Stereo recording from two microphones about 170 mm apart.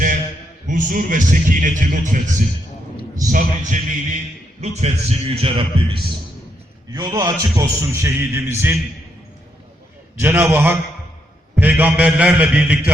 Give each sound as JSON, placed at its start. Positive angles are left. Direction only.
{"t": 0.7, "sound": "a man's voice", "side_deg": -50}
{"t": 3.3, "sound": "a man's voice", "side_deg": -50}
{"t": 6.9, "sound": "a man's voice", "side_deg": -20}
{"t": 10.2, "sound": "a man's voice", "side_deg": -10}